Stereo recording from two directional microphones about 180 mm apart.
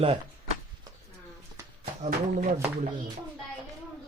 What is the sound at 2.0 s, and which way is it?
Speech, 45° right (ahead or behind).